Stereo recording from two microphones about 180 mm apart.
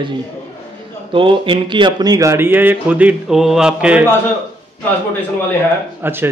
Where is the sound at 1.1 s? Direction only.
30° right (ahead or behind); by 4.0 s 5° right (ahead or behind).